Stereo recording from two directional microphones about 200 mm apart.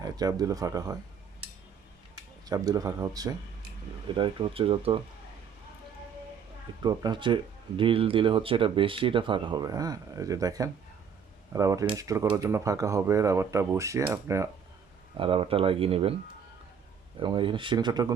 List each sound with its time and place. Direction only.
0.0 s speech: 20° right (ahead or behind)
2.5 s speech: 20° right (ahead or behind)
6.8 s speech: 20° right (ahead or behind)
15.2 s speech: 25° right (ahead or behind)
17.2 s speech: 25° right (ahead or behind)